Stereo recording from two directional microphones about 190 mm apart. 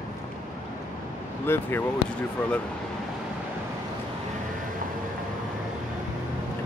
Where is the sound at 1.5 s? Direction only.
10° left (ahead or behind).